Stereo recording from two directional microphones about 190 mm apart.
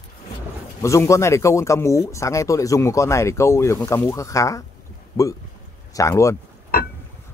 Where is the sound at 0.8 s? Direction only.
15° left (ahead or behind).